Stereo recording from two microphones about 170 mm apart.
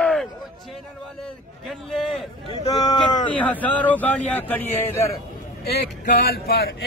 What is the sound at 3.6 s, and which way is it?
Speech, 10° left (ahead or behind).